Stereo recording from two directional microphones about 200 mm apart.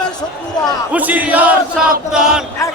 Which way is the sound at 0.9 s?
5° right (ahead or behind).